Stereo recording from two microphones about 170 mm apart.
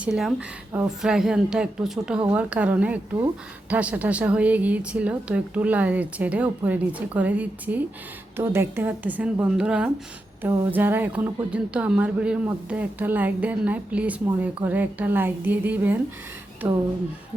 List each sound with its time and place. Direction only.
0.0 s speech: 5° right (ahead or behind)